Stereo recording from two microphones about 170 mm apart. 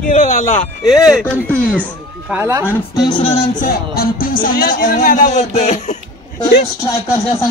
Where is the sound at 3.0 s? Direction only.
30° left (ahead or behind).